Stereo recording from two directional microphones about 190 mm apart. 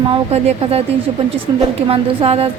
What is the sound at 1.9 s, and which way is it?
Speech, 30° right (ahead or behind).